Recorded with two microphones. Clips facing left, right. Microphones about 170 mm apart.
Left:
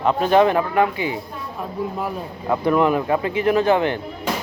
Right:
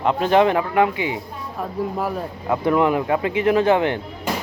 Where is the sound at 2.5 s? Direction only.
15° right (ahead or behind).